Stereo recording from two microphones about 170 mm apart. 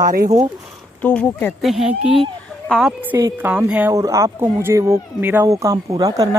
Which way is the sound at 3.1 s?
15° right (ahead or behind).